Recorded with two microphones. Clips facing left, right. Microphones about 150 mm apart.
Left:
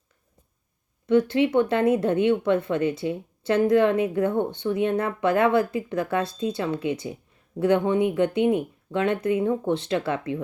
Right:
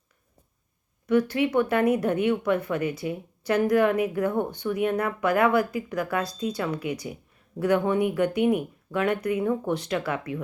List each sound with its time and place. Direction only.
1.0 s speech: 25° left (ahead or behind)